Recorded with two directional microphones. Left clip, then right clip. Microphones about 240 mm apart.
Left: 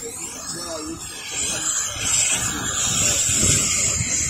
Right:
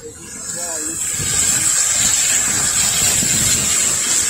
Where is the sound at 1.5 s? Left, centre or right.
Right.